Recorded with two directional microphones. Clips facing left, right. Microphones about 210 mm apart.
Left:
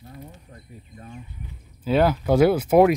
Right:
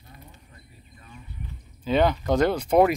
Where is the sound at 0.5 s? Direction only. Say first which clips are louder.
Left 7 dB; 50° left (ahead or behind).